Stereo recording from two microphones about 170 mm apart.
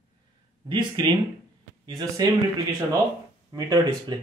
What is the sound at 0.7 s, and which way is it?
Speech, 25° right (ahead or behind).